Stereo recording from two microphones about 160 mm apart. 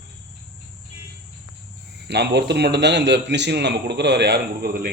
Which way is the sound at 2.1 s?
90° right.